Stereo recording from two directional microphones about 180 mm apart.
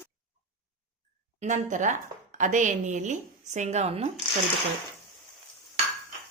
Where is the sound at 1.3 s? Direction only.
45° right (ahead or behind).